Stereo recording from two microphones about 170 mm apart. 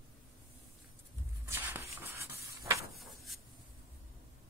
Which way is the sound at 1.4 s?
15° right (ahead or behind).